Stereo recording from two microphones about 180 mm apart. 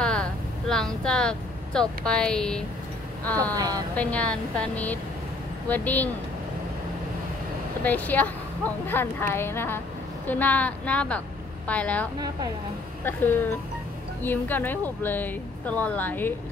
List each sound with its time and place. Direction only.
0.0 s speech: 5° left (ahead or behind)
3.5 s speech: 20° right (ahead or behind)
3.9 s a woman's voice: 5° left (ahead or behind)
7.8 s a woman's voice: 10° left (ahead or behind)